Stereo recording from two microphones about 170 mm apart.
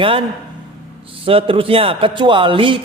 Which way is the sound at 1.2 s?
30° right (ahead or behind).